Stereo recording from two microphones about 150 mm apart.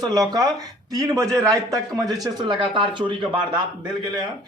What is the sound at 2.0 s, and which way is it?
Speech, 25° right (ahead or behind).